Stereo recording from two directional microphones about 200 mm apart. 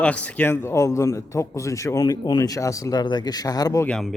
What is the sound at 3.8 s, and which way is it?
Speech, 5° left (ahead or behind).